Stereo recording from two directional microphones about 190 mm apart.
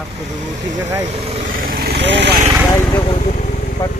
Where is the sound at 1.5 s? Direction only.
50° right (ahead or behind); by 2.3 s 65° right (ahead or behind).